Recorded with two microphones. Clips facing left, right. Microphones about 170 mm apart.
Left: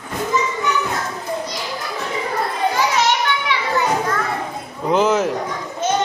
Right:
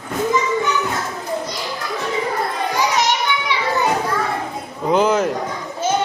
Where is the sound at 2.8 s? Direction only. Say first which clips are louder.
Right 1 dB; 15° right (ahead or behind).